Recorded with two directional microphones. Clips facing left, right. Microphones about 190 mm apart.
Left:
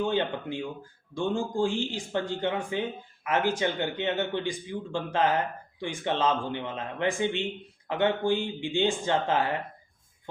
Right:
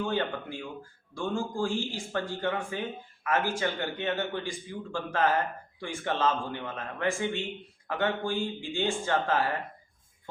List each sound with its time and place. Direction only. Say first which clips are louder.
0.0 s a man's voice: left 3 dB; 20° left (ahead or behind)